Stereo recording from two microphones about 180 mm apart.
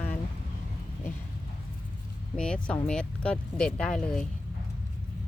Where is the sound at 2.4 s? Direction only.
5° left (ahead or behind).